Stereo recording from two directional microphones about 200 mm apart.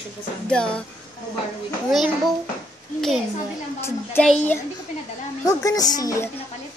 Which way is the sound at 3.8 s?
5° left (ahead or behind).